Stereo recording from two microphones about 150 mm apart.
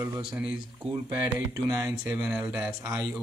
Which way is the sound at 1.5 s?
20° right (ahead or behind).